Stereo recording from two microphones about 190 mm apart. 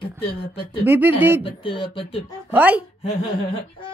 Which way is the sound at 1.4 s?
25° left (ahead or behind).